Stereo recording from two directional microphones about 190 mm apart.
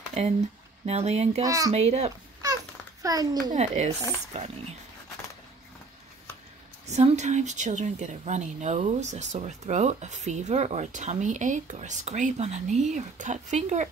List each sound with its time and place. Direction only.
0.8 s speech: 35° right (ahead or behind)
1.4 s speech: 20° right (ahead or behind)
1.7 s speech: 35° right (ahead or behind)
3.0 s a child's voice: 20° right (ahead or behind)
3.5 s speech: 35° right (ahead or behind)
6.9 s speech: 35° right (ahead or behind)